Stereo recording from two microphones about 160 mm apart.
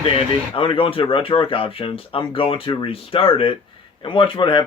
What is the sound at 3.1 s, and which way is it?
Speech, 35° left (ahead or behind).